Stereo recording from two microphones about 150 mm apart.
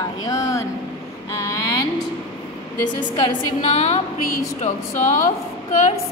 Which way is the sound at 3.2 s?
50° left (ahead or behind).